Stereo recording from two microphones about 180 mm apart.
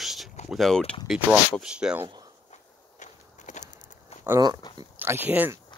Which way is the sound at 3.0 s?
40° left (ahead or behind).